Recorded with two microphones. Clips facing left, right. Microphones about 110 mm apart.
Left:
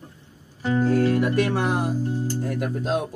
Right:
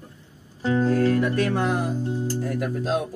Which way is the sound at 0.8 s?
30° right (ahead or behind).